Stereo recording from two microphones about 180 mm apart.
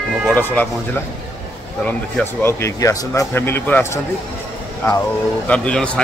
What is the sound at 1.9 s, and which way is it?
Speech, 10° left (ahead or behind).